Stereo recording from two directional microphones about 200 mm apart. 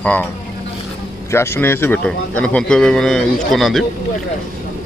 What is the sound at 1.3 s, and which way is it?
A man's voice, 15° left (ahead or behind).